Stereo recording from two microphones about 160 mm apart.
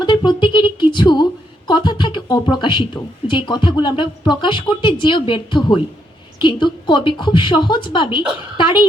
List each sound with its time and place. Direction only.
0.0 s a woman's voice: 30° left (ahead or behind)